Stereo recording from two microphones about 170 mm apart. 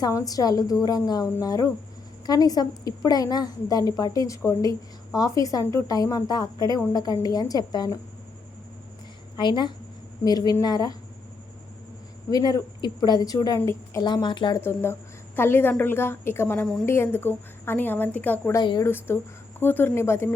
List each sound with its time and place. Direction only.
0.0 s a woman's voice: 20° left (ahead or behind)
9.3 s a woman's voice: 25° left (ahead or behind)
12.3 s a woman's voice: 20° left (ahead or behind)
14.0 s a woman's voice: 25° left (ahead or behind)
14.6 s a woman's voice: 15° left (ahead or behind)
18.6 s a woman's voice: 25° left (ahead or behind)
18.9 s a woman's voice: 15° left (ahead or behind)